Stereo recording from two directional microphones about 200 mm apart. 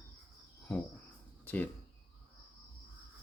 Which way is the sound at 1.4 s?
10° left (ahead or behind).